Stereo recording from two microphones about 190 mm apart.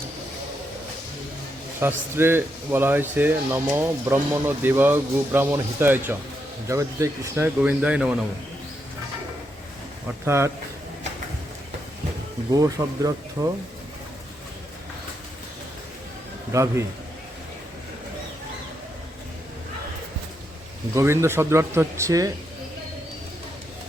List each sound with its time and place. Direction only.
1.8 s speech: 10° right (ahead or behind)
10.2 s speech: 15° right (ahead or behind)
12.5 s speech: 20° right (ahead or behind)
16.5 s speech: 15° right (ahead or behind)
20.9 s speech: 15° right (ahead or behind)